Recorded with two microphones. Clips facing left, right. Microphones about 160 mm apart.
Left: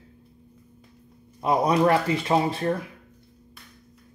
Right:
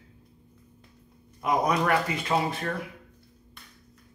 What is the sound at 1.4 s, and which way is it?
A man's voice, 30° left (ahead or behind).